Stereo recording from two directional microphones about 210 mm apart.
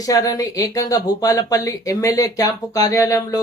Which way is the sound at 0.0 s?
15° left (ahead or behind).